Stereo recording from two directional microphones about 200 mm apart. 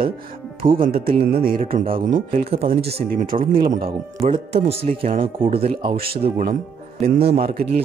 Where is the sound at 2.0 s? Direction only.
25° right (ahead or behind).